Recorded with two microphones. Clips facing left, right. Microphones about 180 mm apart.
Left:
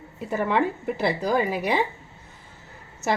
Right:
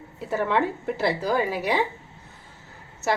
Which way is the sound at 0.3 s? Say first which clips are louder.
Even; 15° left (ahead or behind).